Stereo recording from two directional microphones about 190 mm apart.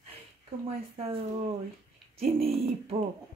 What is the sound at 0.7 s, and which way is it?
Speech, 30° right (ahead or behind).